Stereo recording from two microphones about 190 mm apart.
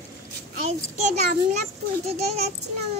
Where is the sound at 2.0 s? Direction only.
35° right (ahead or behind).